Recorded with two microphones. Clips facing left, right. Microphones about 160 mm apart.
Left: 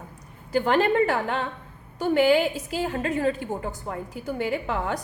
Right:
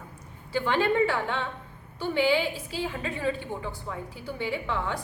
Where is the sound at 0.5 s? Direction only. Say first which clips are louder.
Left 4 dB; 45° left (ahead or behind).